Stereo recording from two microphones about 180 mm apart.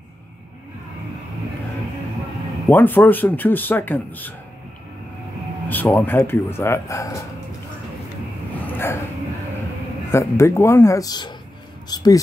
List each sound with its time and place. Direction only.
2.7 s speech: 10° left (ahead or behind)
5.7 s speech: 10° left (ahead or behind)
8.7 s dog: 15° left (ahead or behind)
10.1 s speech: 15° left (ahead or behind)